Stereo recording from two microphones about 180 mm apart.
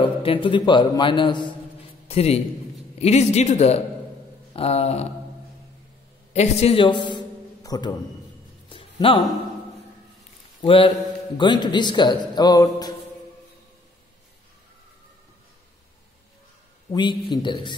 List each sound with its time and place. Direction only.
0.0 s a man's voice: 30° left (ahead or behind)
6.3 s a man's voice: 35° left (ahead or behind)
8.6 s music: 30° left (ahead or behind)
10.6 s a man's voice: 30° left (ahead or behind)
16.9 s a man's voice: 25° left (ahead or behind)